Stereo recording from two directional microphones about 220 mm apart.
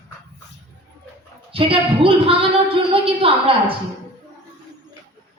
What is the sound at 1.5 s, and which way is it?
A woman's voice, 25° right (ahead or behind).